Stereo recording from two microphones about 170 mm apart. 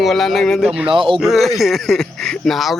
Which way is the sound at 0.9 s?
30° right (ahead or behind).